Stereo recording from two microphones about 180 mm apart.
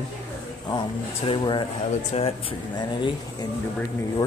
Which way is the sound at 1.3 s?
25° left (ahead or behind).